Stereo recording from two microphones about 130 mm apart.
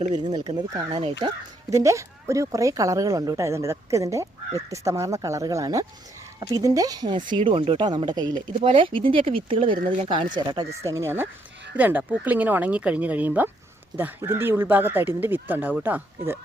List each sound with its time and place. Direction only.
0.1 s speech: 30° right (ahead or behind)
1.7 s speech: 25° right (ahead or behind)